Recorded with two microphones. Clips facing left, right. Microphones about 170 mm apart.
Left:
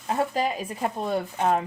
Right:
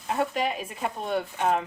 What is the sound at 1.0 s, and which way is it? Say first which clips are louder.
Speech: left 1 dB; 35° left (ahead or behind).